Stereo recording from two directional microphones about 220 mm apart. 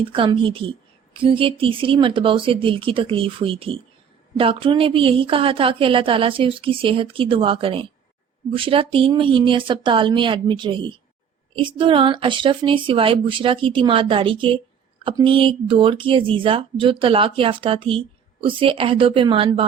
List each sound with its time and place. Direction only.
0.0 s speech: 25° right (ahead or behind)